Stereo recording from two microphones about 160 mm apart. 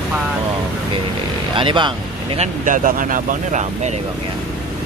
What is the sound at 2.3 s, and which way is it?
Speech, 55° right (ahead or behind).